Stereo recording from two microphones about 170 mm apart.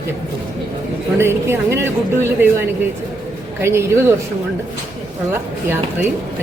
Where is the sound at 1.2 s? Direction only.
15° right (ahead or behind).